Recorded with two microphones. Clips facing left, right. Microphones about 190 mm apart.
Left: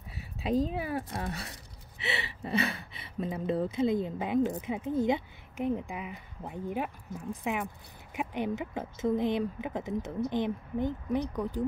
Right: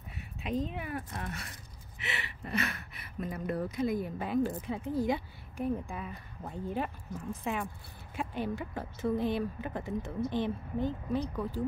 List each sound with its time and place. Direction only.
0.4 s a woman's voice: 35° left (ahead or behind); by 11.6 s 15° left (ahead or behind)